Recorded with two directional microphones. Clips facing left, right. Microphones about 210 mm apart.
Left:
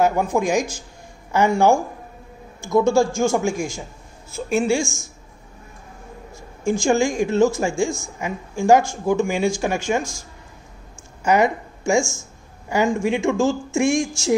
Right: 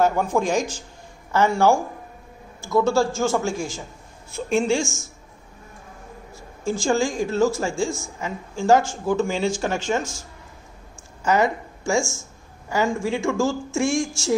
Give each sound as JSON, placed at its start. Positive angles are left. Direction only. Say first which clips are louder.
{"t": 0.0, "sound": "speech", "louder": "left 1 dB", "side_deg": 10}
{"t": 6.6, "sound": "speech", "louder": "left 3 dB", "side_deg": 15}
{"t": 11.2, "sound": "speech", "louder": "left 2 dB", "side_deg": 15}